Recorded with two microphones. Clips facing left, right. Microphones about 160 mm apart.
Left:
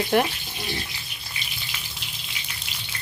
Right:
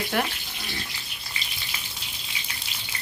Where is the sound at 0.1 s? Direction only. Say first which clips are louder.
Left 6 dB; 25° left (ahead or behind).